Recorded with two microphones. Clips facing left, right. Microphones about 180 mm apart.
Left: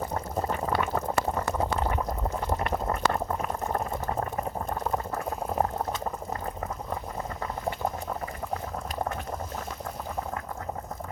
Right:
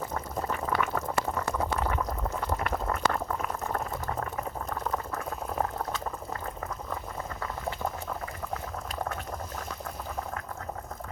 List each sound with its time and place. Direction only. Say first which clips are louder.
0.1 s boiling: left 3 dB; 30° left (ahead or behind)